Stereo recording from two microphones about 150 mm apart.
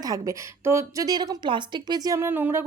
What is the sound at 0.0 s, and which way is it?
A woman's voice, 25° right (ahead or behind).